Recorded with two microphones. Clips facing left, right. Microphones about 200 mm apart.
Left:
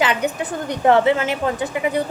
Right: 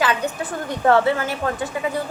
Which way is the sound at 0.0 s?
20° left (ahead or behind).